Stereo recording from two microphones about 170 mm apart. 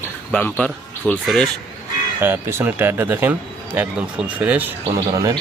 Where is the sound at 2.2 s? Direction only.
15° right (ahead or behind).